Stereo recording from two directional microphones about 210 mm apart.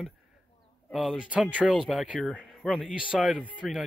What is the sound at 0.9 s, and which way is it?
Speech, 5° right (ahead or behind).